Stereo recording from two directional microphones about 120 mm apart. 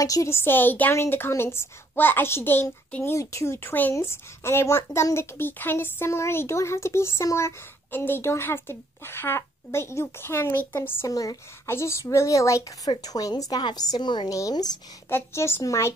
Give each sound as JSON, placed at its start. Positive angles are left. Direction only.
{"t": 0.0, "sound": "a woman's voice", "side_deg": 25}
{"t": 15.0, "sound": "a woman's voice", "side_deg": 20}